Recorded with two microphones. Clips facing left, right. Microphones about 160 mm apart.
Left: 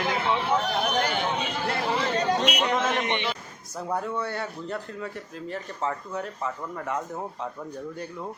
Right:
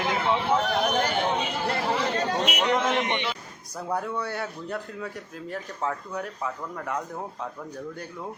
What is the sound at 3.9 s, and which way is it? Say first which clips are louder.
Speech: even; centre (ahead or behind).